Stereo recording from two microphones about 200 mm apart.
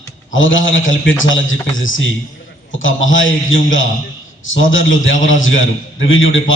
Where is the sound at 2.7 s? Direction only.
75° left (ahead or behind).